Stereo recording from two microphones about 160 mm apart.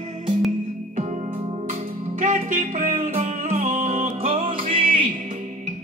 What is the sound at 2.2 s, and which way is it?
Music, 55° right (ahead or behind).